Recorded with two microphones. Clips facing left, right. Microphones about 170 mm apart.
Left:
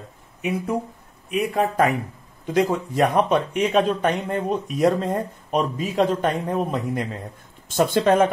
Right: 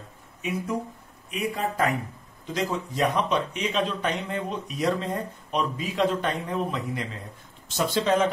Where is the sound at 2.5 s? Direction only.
55° left (ahead or behind).